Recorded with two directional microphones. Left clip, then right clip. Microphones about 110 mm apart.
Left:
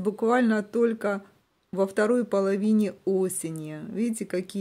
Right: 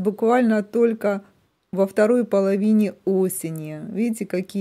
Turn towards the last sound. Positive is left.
turn(degrees=-35)  # may be behind; listen again after turning